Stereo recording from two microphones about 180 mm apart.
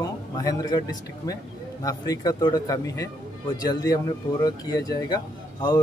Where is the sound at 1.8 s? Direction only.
20° left (ahead or behind).